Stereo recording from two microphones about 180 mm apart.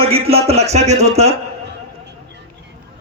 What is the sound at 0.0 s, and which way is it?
Speech, 35° right (ahead or behind).